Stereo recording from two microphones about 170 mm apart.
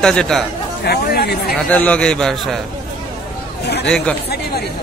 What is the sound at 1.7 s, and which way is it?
Speech, 5° left (ahead or behind).